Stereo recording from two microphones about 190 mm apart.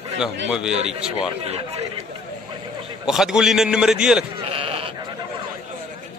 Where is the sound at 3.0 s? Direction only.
5° right (ahead or behind).